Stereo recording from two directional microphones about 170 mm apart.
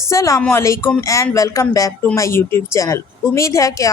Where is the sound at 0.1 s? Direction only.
15° left (ahead or behind).